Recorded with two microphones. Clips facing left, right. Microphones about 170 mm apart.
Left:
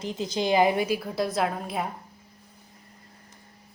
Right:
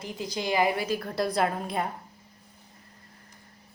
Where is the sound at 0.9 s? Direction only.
5° left (ahead or behind).